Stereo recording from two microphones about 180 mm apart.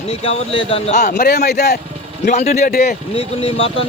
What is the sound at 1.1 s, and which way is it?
Speech, 65° left (ahead or behind).